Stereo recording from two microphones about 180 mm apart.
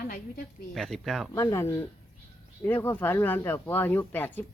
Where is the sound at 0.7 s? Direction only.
Centre (ahead or behind).